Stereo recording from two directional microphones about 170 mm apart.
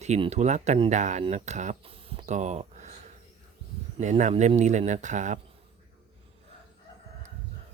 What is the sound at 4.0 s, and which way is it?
Speech, 45° right (ahead or behind).